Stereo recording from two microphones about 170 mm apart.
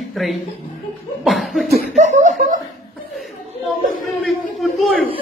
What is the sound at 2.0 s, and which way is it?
Chuckle, 45° right (ahead or behind).